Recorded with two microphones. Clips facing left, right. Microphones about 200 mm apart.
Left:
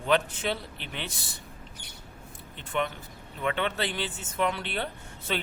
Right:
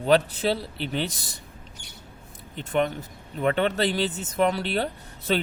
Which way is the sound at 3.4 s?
40° right (ahead or behind).